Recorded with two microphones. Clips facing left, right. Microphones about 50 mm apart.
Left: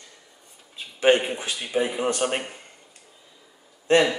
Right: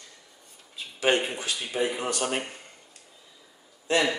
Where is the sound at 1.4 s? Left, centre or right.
Centre.